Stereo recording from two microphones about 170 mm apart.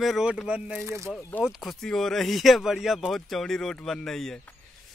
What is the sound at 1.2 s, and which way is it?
Speech, 10° left (ahead or behind).